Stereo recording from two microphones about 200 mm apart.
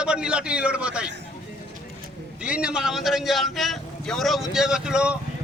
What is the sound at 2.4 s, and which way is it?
A man's voice, 5° right (ahead or behind).